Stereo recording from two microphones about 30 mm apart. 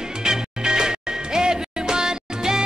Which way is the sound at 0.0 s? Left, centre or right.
Right.